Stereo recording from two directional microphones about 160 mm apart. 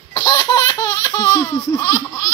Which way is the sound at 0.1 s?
25° left (ahead or behind).